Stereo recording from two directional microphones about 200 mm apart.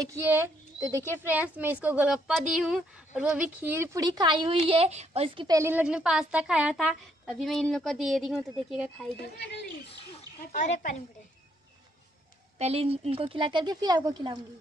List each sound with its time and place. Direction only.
0.0 s a woman's voice: 15° right (ahead or behind)
5.6 s a woman's voice: 10° right (ahead or behind)
9.8 s speech: 35° left (ahead or behind)
12.5 s speech: 30° right (ahead or behind)